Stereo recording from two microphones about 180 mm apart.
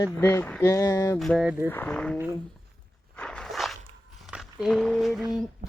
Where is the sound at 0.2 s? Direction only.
15° left (ahead or behind).